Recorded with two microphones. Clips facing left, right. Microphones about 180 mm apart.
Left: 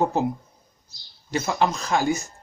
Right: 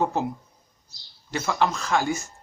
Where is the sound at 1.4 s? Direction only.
20° left (ahead or behind).